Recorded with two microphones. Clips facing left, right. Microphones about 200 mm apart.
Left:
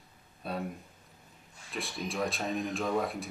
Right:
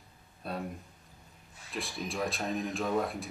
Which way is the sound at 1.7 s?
Centre (ahead or behind).